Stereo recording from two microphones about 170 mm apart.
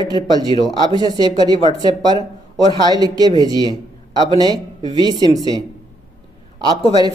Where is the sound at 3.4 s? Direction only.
25° right (ahead or behind).